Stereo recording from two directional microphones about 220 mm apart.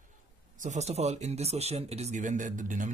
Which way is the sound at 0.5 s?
35° right (ahead or behind).